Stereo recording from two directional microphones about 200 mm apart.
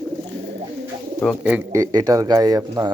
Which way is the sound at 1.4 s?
10° right (ahead or behind).